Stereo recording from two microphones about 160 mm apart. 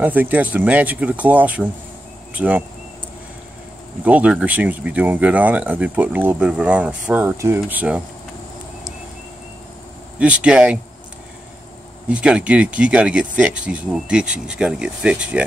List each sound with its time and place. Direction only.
0.0 s speech: 10° right (ahead or behind)
4.0 s speech: 10° right (ahead or behind)
10.1 s speech: 10° right (ahead or behind)
12.1 s speech: 5° right (ahead or behind)